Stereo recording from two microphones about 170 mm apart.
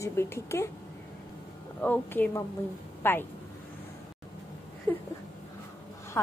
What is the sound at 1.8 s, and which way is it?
A woman's voice, 10° left (ahead or behind).